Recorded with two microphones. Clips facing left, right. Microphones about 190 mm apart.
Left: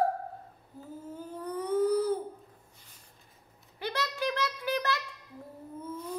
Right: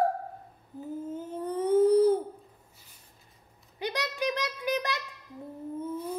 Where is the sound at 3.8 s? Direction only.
15° right (ahead or behind).